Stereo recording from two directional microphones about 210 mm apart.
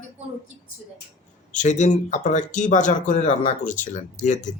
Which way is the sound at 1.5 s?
35° left (ahead or behind).